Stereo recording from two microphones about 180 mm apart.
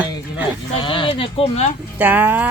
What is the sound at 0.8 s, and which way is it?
Speech, 25° left (ahead or behind).